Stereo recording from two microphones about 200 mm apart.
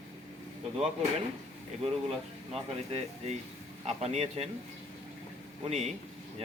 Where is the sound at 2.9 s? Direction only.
35° right (ahead or behind).